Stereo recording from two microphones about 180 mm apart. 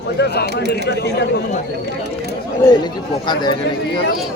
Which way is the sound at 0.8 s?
70° left (ahead or behind).